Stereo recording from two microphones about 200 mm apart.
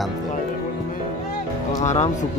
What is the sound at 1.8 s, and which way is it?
Speech, 35° left (ahead or behind).